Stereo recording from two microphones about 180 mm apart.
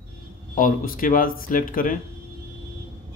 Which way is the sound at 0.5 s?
50° left (ahead or behind).